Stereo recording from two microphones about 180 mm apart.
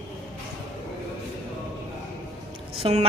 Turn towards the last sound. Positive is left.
turn(degrees=-35)  # may be behind; listen again after turning